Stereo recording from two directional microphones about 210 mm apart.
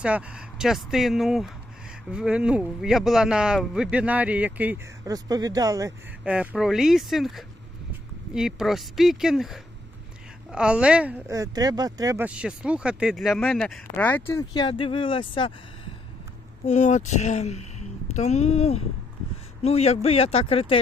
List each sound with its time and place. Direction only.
0.0 s speech: 5° right (ahead or behind); by 20.7 s 25° left (ahead or behind)